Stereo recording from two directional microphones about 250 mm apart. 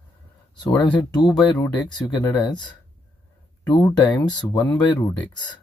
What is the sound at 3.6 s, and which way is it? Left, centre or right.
Speech, centre.